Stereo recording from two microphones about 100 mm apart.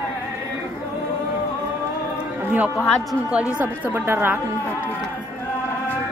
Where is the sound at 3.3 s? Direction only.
15° right (ahead or behind).